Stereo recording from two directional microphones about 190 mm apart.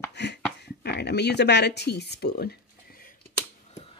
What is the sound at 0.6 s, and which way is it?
Speech, 60° left (ahead or behind).